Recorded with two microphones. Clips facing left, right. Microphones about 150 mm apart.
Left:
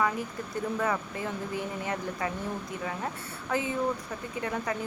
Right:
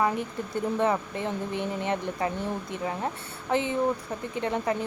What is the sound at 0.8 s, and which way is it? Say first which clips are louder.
Speech: right 6 dB; 25° right (ahead or behind).